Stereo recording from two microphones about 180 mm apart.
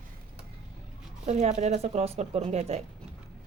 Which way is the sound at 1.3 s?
40° right (ahead or behind).